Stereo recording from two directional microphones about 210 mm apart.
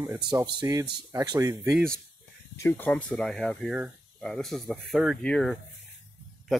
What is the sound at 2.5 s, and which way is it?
Speech, 10° left (ahead or behind).